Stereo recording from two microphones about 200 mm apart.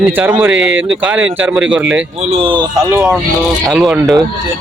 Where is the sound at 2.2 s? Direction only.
30° right (ahead or behind).